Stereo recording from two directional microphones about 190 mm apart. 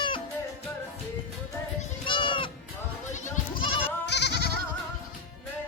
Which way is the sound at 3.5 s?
25° left (ahead or behind).